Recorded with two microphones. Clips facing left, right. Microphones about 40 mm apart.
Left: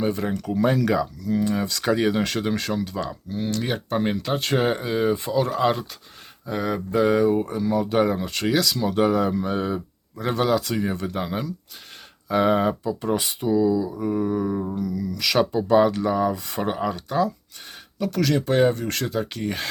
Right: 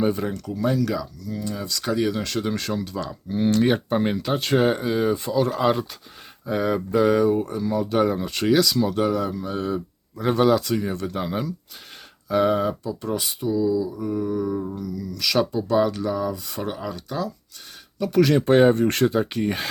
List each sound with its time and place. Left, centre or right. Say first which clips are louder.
0.0 s speech: right 2 dB; centre
0.3 s speech: left 2 dB; left
0.5 s speech: left 3 dB; left
1.7 s speech: right 1 dB; centre
3.2 s speech: right 9 dB; centre
8.9 s speech: left 2 dB; centre
10.2 s speech: right 3 dB; centre
12.3 s speech: left 1 dB; centre
13.5 s speech: left 2 dB; left; by 17.3 s centre
18.1 s speech: right 5 dB; centre